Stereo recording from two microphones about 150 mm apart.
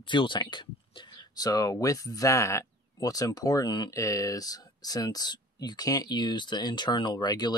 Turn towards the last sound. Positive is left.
turn(degrees=30)  # may be behind; listen again after turning